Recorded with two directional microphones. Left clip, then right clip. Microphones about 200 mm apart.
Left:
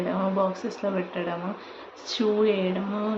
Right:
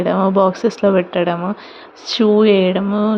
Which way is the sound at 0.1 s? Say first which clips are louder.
Right 12 dB; 45° right (ahead or behind).